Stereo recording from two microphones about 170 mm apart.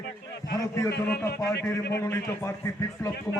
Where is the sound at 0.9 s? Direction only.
70° left (ahead or behind).